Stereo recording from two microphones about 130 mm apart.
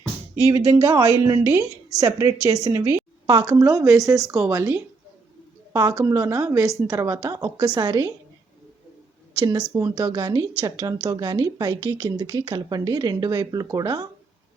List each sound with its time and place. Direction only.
0.4 s a woman's voice: 25° right (ahead or behind)
9.4 s a woman's voice: 30° right (ahead or behind)